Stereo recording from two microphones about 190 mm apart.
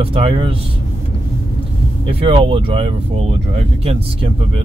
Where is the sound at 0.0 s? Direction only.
30° right (ahead or behind).